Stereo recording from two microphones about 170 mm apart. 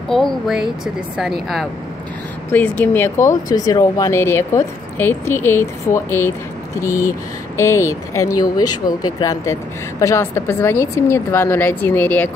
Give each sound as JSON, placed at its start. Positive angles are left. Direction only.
{"t": 0.1, "sound": "speech", "side_deg": 0}
{"t": 2.5, "sound": "speech", "side_deg": 10}